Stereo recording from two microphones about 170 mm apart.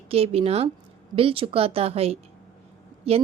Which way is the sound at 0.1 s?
35° right (ahead or behind).